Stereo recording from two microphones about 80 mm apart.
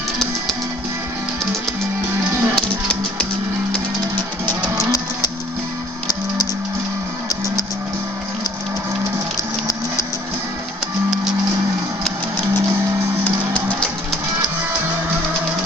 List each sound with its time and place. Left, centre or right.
2.5 s music: centre
4.1 s music: right